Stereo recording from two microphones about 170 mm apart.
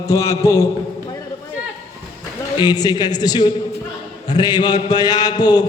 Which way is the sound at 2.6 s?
25° left (ahead or behind).